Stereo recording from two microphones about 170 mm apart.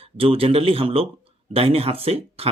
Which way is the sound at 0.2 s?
35° right (ahead or behind).